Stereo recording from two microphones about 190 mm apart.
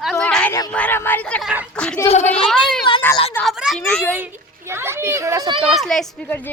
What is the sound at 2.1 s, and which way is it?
Speech, 35° left (ahead or behind).